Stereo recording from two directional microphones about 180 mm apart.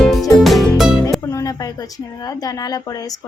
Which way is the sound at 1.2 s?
15° left (ahead or behind).